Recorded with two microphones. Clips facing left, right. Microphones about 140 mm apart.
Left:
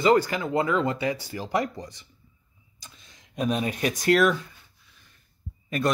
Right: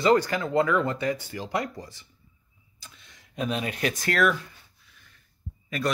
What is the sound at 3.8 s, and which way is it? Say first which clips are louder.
Speech: left 4 dB; 20° left (ahead or behind).